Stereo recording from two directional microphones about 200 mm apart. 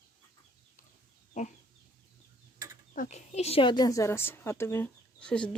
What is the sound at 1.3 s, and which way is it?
Chicken, 40° left (ahead or behind).